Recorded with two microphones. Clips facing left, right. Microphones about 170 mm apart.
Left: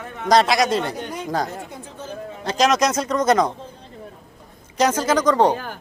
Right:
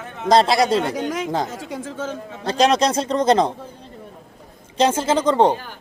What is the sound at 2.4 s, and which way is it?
A man's voice, 30° right (ahead or behind).